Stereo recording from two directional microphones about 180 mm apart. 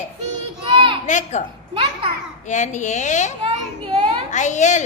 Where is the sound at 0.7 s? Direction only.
30° right (ahead or behind).